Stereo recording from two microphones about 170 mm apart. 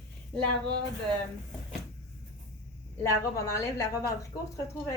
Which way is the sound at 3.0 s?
15° left (ahead or behind).